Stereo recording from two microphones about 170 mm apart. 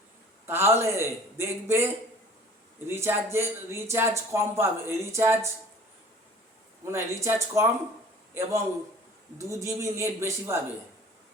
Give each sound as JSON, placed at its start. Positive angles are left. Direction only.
{"t": 0.4, "sound": "speech", "side_deg": -15}
{"t": 2.8, "sound": "speech", "side_deg": -15}
{"t": 6.8, "sound": "a man's voice", "side_deg": -15}